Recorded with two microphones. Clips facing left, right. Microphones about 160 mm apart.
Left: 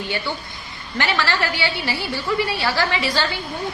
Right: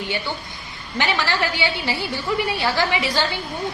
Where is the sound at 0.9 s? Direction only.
15° right (ahead or behind).